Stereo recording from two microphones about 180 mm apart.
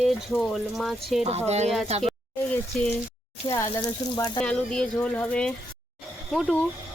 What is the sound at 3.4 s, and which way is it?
Speech, 20° left (ahead or behind).